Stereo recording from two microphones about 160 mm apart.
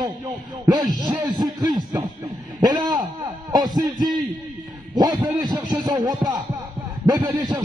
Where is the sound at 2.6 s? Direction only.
25° right (ahead or behind).